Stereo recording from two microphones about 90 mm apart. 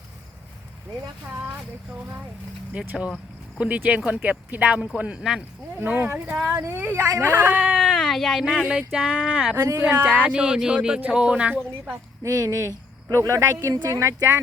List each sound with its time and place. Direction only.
1.3 s speech: 25° right (ahead or behind)
2.8 s speech: 15° right (ahead or behind)
6.2 s speech: 5° right (ahead or behind)
6.5 s speech: 35° right (ahead or behind)
6.7 s speech: 20° right (ahead or behind)
12.2 s speech: 35° right (ahead or behind)